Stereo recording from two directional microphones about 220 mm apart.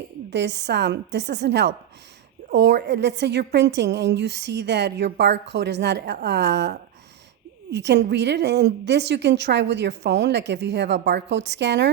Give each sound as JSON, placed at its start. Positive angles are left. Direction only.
{"t": 0.3, "sound": "a woman's voice", "side_deg": -50}